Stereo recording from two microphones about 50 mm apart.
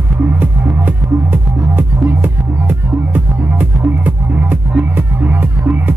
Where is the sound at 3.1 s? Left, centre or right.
Right.